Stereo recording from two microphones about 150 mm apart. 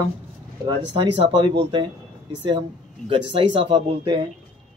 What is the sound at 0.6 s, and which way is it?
Speech, 35° right (ahead or behind).